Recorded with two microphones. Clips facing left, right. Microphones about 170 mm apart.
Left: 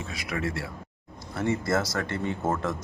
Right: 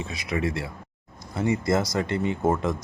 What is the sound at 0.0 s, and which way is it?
A man's voice, 20° right (ahead or behind).